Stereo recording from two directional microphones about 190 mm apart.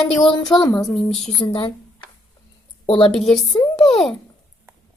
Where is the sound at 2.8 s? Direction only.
30° left (ahead or behind).